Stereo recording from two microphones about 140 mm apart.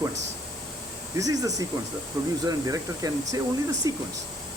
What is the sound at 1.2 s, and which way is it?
Speech, 25° right (ahead or behind).